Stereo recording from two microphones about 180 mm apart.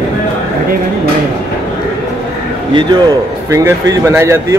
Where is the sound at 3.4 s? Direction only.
20° right (ahead or behind).